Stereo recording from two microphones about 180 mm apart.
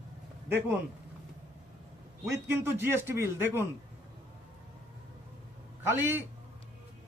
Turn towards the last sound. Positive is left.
turn(degrees=-10)  # may be behind; listen again after turning